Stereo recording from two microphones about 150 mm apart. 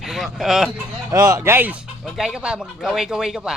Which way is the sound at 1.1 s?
20° right (ahead or behind).